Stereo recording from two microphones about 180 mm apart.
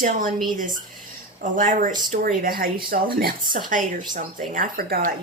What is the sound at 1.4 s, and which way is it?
Speech, 45° right (ahead or behind).